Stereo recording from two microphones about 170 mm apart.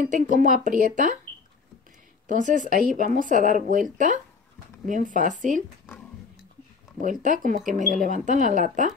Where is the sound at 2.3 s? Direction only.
50° right (ahead or behind).